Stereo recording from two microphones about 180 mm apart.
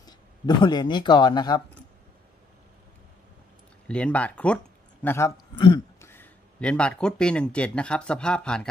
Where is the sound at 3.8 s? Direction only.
5° left (ahead or behind).